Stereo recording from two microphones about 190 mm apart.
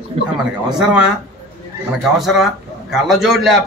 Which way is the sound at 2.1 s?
Centre (ahead or behind).